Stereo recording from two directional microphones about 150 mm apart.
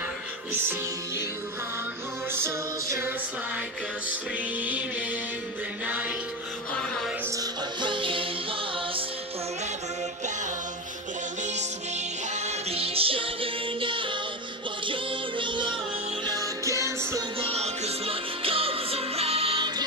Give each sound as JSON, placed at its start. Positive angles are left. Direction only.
{"t": 0.5, "sound": "music", "side_deg": -15}
{"t": 2.3, "sound": "music", "side_deg": -15}
{"t": 4.1, "sound": "music", "side_deg": -10}
{"t": 5.9, "sound": "music", "side_deg": -10}
{"t": 7.3, "sound": "music", "side_deg": -35}
{"t": 12.4, "sound": "music", "side_deg": -40}
{"t": 16.3, "sound": "music", "side_deg": -20}
{"t": 17.4, "sound": "music", "side_deg": -40}